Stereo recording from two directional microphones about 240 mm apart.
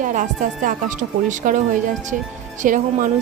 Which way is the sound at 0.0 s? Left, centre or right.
Right.